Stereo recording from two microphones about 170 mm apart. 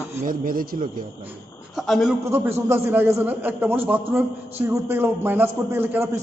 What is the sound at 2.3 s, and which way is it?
A man's voice, 15° right (ahead or behind).